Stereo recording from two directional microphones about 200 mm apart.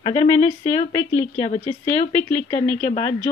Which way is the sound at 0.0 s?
25° left (ahead or behind).